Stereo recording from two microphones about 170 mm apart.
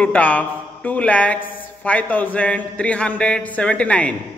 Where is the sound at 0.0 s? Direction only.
10° left (ahead or behind).